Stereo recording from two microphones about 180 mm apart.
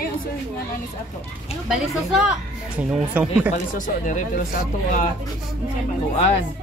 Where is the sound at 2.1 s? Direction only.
5° right (ahead or behind).